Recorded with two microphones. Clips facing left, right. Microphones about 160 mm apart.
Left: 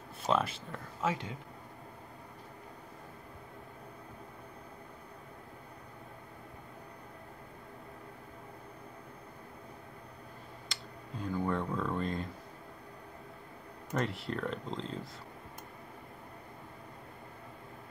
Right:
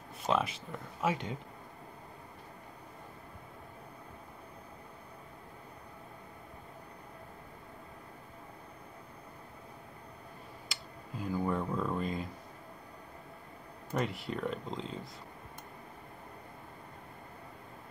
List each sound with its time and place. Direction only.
0.3 s speech: 5° right (ahead or behind)
1.0 s speech: 15° right (ahead or behind)
10.7 s a sound: 5° right (ahead or behind)
13.9 s speech: centre (ahead or behind)